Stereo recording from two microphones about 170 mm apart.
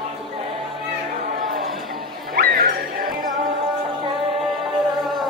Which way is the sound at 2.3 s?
60° right (ahead or behind).